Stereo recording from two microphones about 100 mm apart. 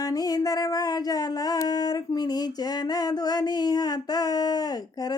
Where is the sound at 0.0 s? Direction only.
40° left (ahead or behind).